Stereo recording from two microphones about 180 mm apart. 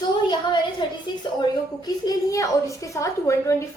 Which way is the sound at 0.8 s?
25° left (ahead or behind).